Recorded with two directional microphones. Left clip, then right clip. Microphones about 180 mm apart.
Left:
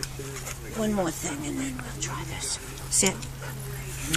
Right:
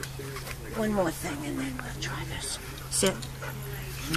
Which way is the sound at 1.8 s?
50° left (ahead or behind).